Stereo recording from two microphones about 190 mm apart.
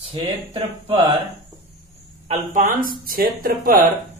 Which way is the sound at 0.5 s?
30° right (ahead or behind).